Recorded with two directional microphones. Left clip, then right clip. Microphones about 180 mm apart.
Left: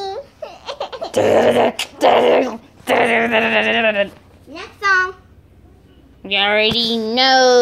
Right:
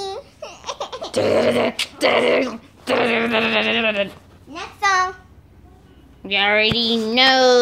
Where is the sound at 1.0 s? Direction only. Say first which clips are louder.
Left 4 dB; 5° left (ahead or behind).